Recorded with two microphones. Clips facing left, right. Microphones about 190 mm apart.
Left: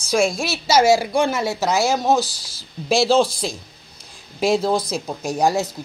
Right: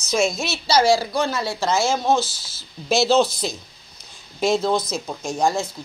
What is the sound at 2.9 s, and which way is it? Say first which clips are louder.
Speech: left 1 dB; 30° left (ahead or behind).